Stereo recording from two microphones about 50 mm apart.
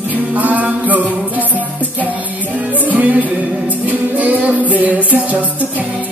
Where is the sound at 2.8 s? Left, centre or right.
Right.